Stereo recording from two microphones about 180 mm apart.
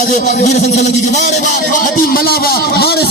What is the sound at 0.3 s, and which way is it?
Speech, 40° left (ahead or behind).